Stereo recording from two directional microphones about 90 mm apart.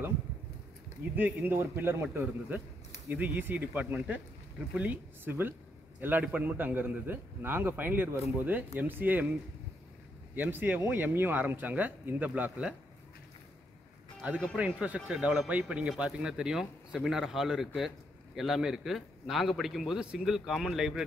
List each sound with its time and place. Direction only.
1.0 s a sound: 25° right (ahead or behind)
1.4 s a man's voice: 25° right (ahead or behind)
10.3 s a man's voice: 20° right (ahead or behind)
14.2 s speech: 15° right (ahead or behind)